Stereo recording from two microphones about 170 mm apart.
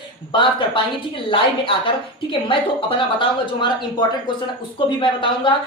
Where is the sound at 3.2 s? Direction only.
30° left (ahead or behind).